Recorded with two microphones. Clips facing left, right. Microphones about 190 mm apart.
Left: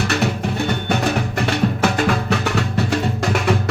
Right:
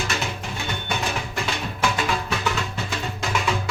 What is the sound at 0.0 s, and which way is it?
Music, 60° left (ahead or behind).